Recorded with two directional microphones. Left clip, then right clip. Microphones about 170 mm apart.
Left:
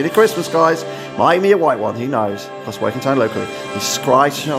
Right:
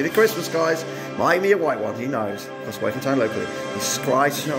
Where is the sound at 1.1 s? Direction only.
25° left (ahead or behind).